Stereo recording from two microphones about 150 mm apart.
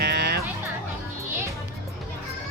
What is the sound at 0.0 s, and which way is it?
Music, 90° right.